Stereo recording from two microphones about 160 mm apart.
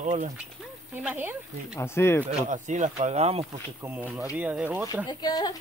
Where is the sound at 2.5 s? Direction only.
50° right (ahead or behind).